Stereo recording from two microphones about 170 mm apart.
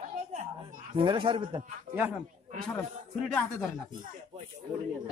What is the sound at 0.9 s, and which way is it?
Speech, 30° right (ahead or behind).